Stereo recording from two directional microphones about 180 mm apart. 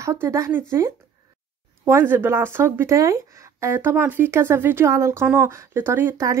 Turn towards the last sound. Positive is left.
turn(degrees=-15)  # may be behind; listen again after turning